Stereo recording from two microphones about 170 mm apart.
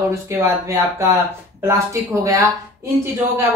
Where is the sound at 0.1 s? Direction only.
15° right (ahead or behind).